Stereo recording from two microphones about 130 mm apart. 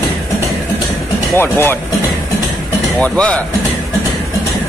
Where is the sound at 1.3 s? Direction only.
15° left (ahead or behind).